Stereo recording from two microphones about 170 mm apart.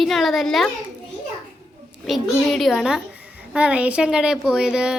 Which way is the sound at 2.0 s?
Centre (ahead or behind).